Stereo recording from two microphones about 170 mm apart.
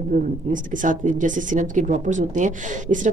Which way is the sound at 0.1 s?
50° right (ahead or behind).